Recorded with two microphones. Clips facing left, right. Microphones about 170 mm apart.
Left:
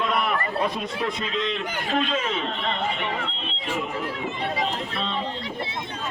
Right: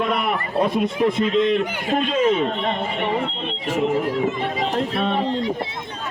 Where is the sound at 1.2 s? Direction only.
55° right (ahead or behind).